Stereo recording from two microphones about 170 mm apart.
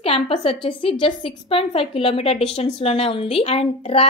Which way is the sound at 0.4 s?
35° left (ahead or behind).